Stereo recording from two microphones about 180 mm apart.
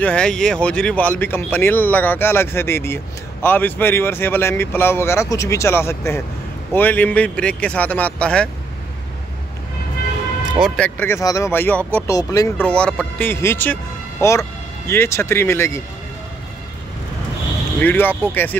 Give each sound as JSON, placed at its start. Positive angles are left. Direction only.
{"t": 0.0, "sound": "speech", "side_deg": 5}
{"t": 10.6, "sound": "speech", "side_deg": 5}
{"t": 12.6, "sound": "speech", "side_deg": 5}
{"t": 17.7, "sound": "speech", "side_deg": 10}